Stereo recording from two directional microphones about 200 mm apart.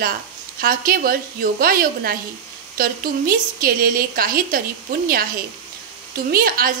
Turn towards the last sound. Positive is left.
turn(degrees=-45)  # may be behind; listen again after turning